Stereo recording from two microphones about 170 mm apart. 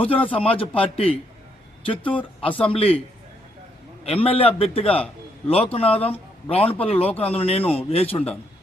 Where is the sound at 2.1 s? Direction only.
30° left (ahead or behind).